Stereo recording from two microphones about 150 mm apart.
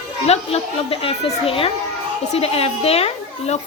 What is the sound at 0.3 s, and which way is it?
Speech, 40° left (ahead or behind).